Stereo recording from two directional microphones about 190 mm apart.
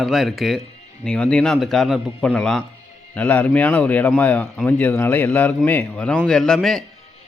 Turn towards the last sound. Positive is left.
turn(degrees=0)  # may be behind; listen again after turning